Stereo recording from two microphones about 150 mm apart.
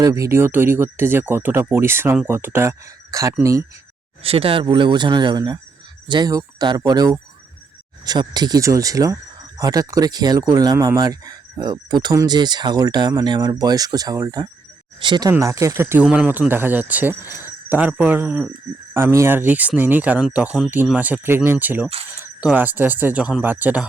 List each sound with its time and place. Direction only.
0.0 s speech: 20° right (ahead or behind)
4.2 s speech: 40° right (ahead or behind)
15.3 s speech: 20° right (ahead or behind)